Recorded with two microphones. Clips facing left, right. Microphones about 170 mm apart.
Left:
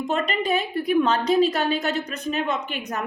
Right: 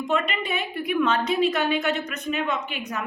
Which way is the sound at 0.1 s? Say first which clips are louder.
Left 3 dB; 35° left (ahead or behind).